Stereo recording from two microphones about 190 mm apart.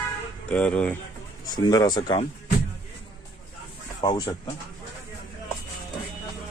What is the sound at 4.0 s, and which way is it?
Speech, 20° left (ahead or behind).